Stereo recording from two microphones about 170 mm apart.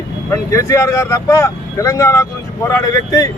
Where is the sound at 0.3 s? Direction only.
15° left (ahead or behind).